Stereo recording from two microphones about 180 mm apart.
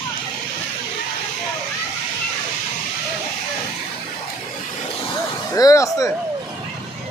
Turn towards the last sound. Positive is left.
turn(degrees=20)  # may be behind; listen again after turning